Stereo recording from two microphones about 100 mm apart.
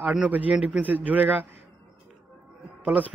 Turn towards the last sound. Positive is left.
turn(degrees=-15)  # may be behind; listen again after turning